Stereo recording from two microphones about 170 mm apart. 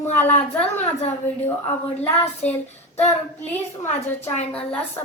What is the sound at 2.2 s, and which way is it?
Child singing, 40° left (ahead or behind).